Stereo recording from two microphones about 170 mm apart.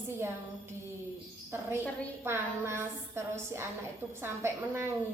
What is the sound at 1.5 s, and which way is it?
A woman's voice, 15° right (ahead or behind).